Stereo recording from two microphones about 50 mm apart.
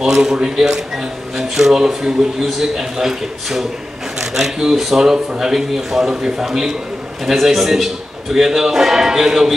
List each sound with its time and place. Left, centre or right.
0.0 s a man's voice: centre